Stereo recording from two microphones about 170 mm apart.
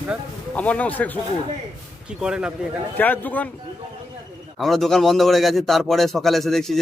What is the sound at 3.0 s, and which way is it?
Speech, 10° left (ahead or behind).